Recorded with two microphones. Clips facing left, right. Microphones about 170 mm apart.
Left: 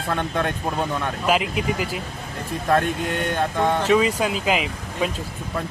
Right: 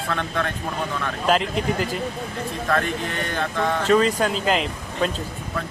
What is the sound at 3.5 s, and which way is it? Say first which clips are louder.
Speech: left 1 dB; 15° left (ahead or behind).